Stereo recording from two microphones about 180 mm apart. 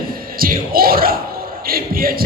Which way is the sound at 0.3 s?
55° right (ahead or behind).